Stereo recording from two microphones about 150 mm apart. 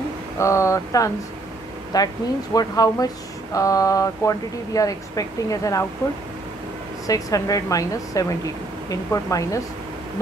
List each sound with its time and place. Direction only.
0.4 s speech: 20° left (ahead or behind)
7.1 s speech: 25° left (ahead or behind)